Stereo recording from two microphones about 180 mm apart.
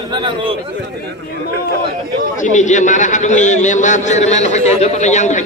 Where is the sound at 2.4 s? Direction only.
40° left (ahead or behind).